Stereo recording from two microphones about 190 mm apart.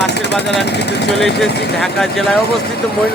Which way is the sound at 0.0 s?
60° left (ahead or behind).